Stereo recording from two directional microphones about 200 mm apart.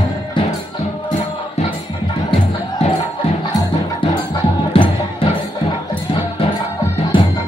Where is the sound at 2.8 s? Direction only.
35° left (ahead or behind).